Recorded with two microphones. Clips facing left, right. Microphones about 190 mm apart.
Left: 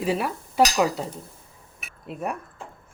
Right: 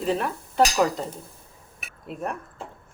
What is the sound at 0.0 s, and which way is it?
Speech, 10° left (ahead or behind).